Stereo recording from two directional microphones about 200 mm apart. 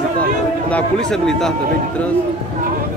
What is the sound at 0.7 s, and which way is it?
Speech, 5° left (ahead or behind).